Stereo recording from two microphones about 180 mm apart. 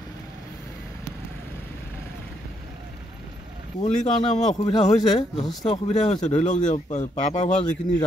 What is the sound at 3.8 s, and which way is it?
Speech, 35° left (ahead or behind).